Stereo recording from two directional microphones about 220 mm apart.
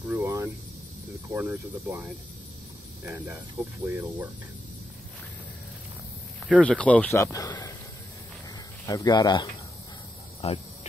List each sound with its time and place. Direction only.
0.1 s a sound: 10° right (ahead or behind)
1.3 s speech: 10° right (ahead or behind)
6.4 s speech: centre (ahead or behind); by 7.7 s 15° left (ahead or behind)
8.8 s speech: 15° left (ahead or behind)
10.4 s cricket: 25° left (ahead or behind)